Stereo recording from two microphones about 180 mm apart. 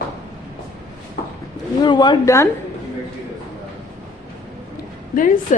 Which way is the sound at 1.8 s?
25° left (ahead or behind).